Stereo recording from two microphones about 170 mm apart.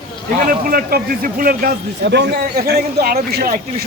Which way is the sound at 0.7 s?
60° right (ahead or behind).